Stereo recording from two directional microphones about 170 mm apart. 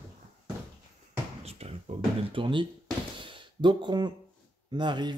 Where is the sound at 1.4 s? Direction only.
35° right (ahead or behind).